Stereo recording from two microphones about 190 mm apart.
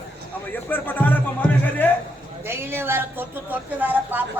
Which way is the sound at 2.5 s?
10° right (ahead or behind).